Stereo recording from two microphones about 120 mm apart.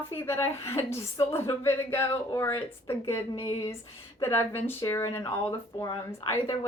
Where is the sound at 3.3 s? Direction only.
45° left (ahead or behind).